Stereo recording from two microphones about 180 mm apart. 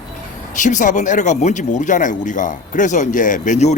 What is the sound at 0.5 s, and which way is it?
Speech, 45° left (ahead or behind).